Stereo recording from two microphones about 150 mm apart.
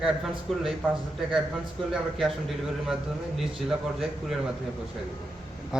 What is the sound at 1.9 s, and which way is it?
Speech, centre (ahead or behind).